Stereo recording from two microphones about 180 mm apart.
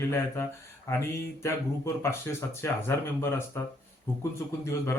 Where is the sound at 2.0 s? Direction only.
15° left (ahead or behind).